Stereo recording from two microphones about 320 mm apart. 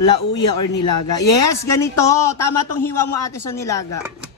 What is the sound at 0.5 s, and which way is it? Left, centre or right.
Speech, left.